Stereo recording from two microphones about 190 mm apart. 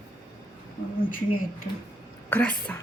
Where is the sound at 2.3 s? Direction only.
10° left (ahead or behind).